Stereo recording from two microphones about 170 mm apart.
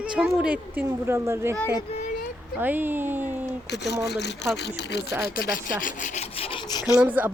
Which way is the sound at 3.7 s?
90° left.